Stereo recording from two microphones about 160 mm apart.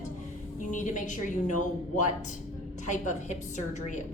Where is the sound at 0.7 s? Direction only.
50° left (ahead or behind).